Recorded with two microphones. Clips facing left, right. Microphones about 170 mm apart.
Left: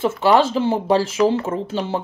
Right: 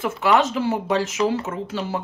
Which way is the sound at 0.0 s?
30° left (ahead or behind).